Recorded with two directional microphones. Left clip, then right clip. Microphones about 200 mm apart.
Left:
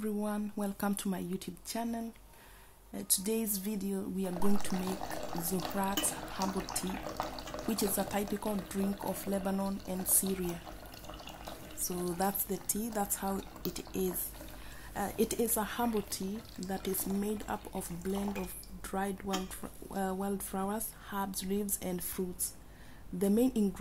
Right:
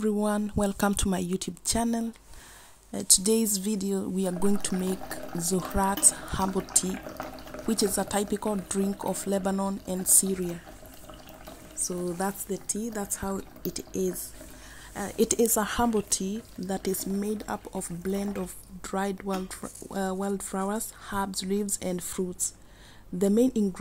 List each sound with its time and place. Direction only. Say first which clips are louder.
0.0 s speech: right 9 dB; 35° right (ahead or behind)
12.2 s speech: right 3 dB; 10° right (ahead or behind)
15.2 s speech: right 8 dB; 30° right (ahead or behind)